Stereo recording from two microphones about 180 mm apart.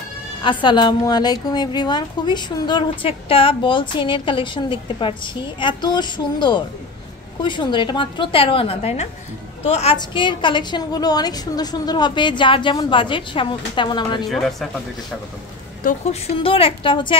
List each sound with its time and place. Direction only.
0.4 s a woman's voice: 25° left (ahead or behind)
14.3 s speech: centre (ahead or behind)
15.8 s a woman's voice: 50° left (ahead or behind)
16.3 s a woman's voice: 30° left (ahead or behind)